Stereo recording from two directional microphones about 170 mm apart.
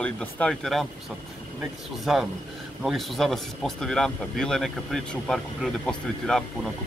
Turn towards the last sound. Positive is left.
turn(degrees=0)  # may be behind; listen again after turning